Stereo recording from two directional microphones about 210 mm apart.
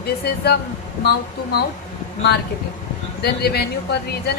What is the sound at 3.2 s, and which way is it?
Speech, 50° left (ahead or behind).